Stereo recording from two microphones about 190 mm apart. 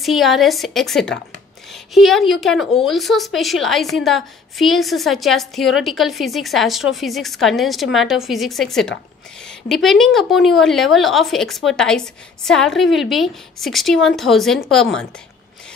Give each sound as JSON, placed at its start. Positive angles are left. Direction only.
{"t": 0.0, "sound": "a woman's voice", "side_deg": 0}